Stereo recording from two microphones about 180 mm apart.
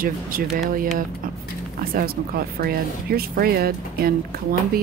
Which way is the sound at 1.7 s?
55° right (ahead or behind).